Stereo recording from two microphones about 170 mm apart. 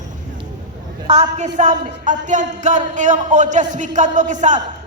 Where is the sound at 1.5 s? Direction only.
50° right (ahead or behind).